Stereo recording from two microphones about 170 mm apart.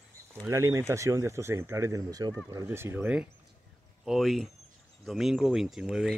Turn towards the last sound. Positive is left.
turn(degrees=0)  # may be behind; listen again after turning